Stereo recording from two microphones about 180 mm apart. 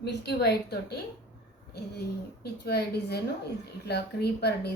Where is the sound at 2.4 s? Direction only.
65° left (ahead or behind).